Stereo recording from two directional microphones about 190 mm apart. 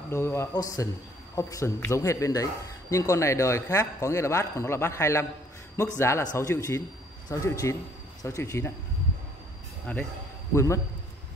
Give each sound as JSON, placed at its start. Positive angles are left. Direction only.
{"t": 0.1, "sound": "a man's voice", "side_deg": 15}
{"t": 9.9, "sound": "a man's voice", "side_deg": 10}